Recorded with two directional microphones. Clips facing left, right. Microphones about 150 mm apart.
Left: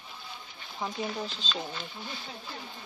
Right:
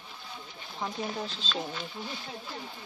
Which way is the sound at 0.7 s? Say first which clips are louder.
Even; centre (ahead or behind).